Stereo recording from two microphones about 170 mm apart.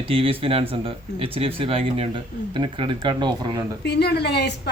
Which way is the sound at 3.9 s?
70° left (ahead or behind).